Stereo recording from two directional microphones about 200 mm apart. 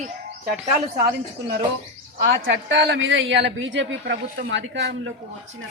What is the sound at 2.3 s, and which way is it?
A woman's voice, 65° right (ahead or behind).